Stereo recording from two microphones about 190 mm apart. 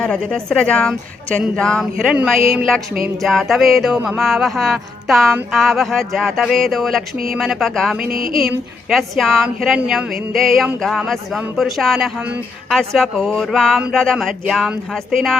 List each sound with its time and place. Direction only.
0.0 s music: 5° left (ahead or behind)
8.1 s a sound: 50° right (ahead or behind)
8.4 s music: centre (ahead or behind)